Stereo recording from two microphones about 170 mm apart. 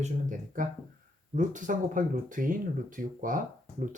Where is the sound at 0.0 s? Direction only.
50° right (ahead or behind).